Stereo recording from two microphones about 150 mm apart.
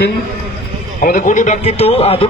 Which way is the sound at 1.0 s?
60° left (ahead or behind).